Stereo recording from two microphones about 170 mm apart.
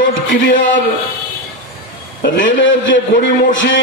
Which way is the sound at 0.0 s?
50° left (ahead or behind).